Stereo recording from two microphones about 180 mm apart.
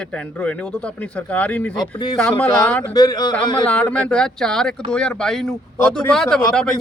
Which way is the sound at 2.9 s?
20° left (ahead or behind).